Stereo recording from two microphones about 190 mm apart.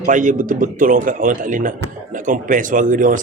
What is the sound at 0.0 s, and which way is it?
A man's voice, 45° right (ahead or behind).